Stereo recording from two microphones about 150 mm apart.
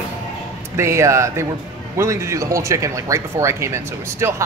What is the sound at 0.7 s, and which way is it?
Speech, 20° right (ahead or behind).